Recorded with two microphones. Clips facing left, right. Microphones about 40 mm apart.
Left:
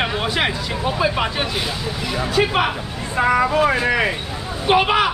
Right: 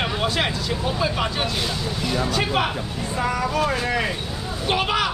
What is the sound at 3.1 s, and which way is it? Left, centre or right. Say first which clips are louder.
Speech: left 7 dB; left.